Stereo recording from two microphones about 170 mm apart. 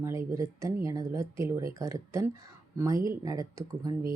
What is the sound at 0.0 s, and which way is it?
Speech, 15° right (ahead or behind).